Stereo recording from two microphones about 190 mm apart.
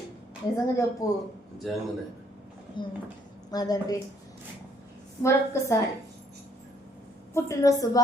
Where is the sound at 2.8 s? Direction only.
25° left (ahead or behind).